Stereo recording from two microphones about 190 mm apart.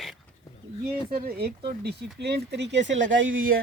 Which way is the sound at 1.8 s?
60° right (ahead or behind).